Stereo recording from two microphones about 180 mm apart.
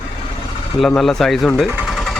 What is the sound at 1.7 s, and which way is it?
Sewing machine, 5° right (ahead or behind).